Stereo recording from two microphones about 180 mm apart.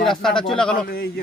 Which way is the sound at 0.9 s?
60° left (ahead or behind).